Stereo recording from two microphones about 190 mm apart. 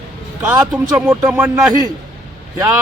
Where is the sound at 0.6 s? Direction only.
5° right (ahead or behind).